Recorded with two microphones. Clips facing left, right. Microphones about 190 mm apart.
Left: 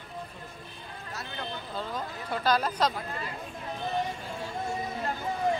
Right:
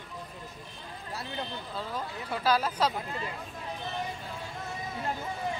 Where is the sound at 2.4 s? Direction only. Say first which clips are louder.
Even; 5° right (ahead or behind).